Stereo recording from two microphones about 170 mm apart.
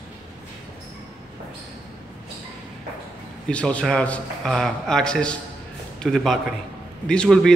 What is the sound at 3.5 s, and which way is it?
A man's voice, 5° left (ahead or behind).